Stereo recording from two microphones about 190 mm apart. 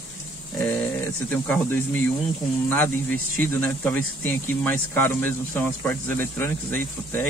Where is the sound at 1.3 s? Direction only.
5° left (ahead or behind).